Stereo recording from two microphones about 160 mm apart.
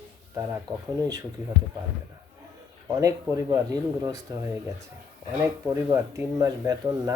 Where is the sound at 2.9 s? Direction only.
20° right (ahead or behind).